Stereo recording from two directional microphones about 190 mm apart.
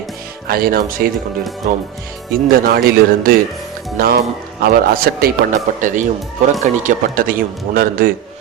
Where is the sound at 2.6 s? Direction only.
50° right (ahead or behind).